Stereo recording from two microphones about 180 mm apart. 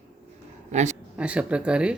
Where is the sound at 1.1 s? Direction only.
5° right (ahead or behind).